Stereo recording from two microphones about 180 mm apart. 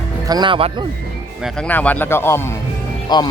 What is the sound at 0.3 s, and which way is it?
Speech, 25° right (ahead or behind).